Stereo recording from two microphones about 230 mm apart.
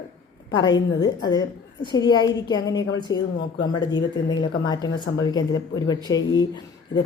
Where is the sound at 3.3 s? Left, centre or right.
Left.